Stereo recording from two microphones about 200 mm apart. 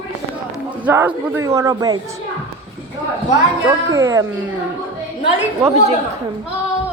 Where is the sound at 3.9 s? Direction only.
15° right (ahead or behind).